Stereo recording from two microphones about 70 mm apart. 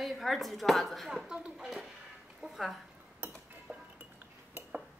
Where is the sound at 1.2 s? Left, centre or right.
Centre.